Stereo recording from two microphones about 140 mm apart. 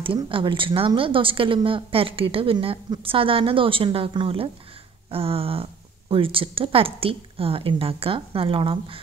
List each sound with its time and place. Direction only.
0.0 s a woman's voice: 40° right (ahead or behind)